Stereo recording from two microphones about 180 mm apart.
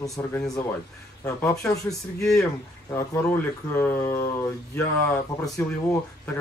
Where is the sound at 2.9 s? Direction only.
15° left (ahead or behind).